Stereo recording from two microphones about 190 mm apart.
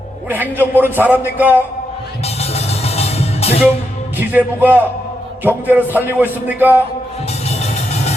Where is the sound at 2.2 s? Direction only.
30° left (ahead or behind).